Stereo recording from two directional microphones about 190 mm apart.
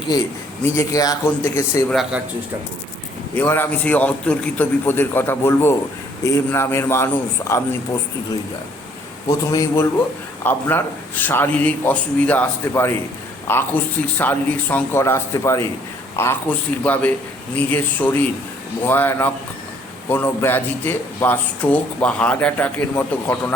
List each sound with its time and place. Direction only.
0.6 s speech: 15° left (ahead or behind)
3.3 s speech: 10° left (ahead or behind)
9.5 s speech: 15° left (ahead or behind)